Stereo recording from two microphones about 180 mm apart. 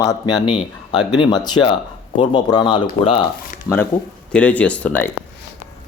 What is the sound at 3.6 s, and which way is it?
Speech, 15° left (ahead or behind).